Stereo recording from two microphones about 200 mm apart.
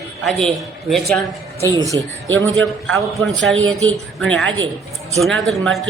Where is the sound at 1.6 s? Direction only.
15° right (ahead or behind).